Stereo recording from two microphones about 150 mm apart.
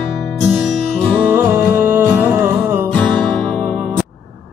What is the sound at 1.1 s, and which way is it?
Music, 15° right (ahead or behind).